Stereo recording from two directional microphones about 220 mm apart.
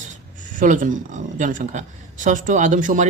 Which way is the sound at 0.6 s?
35° right (ahead or behind).